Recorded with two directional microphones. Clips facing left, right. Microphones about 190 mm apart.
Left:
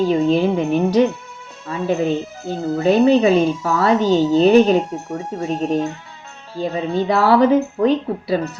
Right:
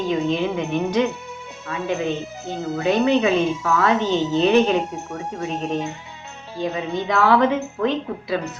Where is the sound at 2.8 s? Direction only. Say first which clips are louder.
Left 5 dB; 35° left (ahead or behind).